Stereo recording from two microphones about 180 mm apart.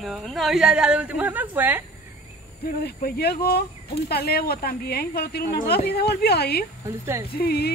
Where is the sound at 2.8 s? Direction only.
60° left (ahead or behind).